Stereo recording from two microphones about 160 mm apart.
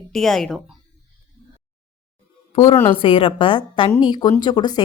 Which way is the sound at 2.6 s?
15° left (ahead or behind).